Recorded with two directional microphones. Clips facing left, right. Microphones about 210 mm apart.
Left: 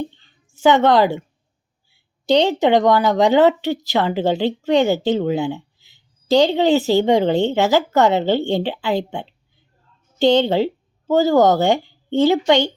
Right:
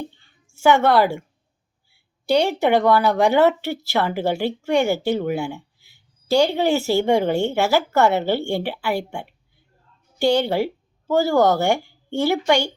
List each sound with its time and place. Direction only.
0.4 s a woman's voice: 20° left (ahead or behind)
2.2 s a woman's voice: 20° left (ahead or behind)